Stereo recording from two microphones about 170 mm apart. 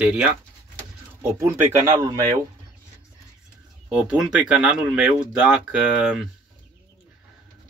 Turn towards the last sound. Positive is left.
turn(degrees=-5)  # may be behind; listen again after turning